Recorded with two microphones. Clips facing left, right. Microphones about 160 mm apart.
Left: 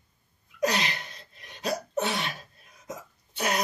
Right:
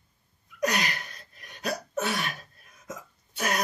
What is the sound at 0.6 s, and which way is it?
Cough, 25° left (ahead or behind).